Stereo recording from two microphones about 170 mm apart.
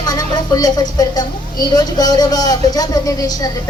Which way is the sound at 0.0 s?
20° left (ahead or behind).